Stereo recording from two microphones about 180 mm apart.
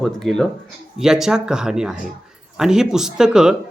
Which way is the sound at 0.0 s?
5° left (ahead or behind).